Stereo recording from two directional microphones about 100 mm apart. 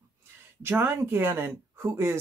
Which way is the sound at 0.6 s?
25° right (ahead or behind).